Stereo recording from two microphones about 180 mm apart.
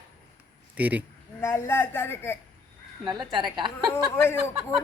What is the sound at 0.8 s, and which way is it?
Speech, 10° right (ahead or behind).